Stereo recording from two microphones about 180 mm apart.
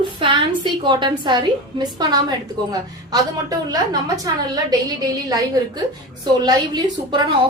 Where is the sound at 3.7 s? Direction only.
20° right (ahead or behind).